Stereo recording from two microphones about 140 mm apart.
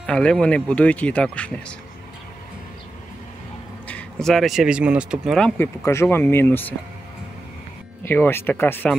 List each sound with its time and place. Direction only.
0.0 s speech: 5° left (ahead or behind)
3.8 s speech: 5° left (ahead or behind)
5.6 s speech: 20° left (ahead or behind)
8.0 s speech: 15° left (ahead or behind)